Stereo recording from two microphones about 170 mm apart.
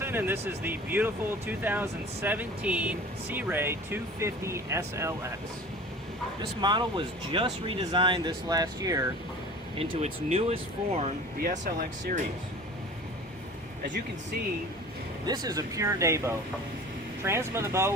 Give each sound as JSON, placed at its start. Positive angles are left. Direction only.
{"t": 0.0, "sound": "speech", "side_deg": -10}
{"t": 6.6, "sound": "speech", "side_deg": -25}
{"t": 9.7, "sound": "speech", "side_deg": -40}
{"t": 15.3, "sound": "speech", "side_deg": -20}